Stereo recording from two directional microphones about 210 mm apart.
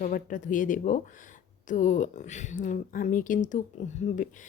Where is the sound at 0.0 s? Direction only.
40° left (ahead or behind).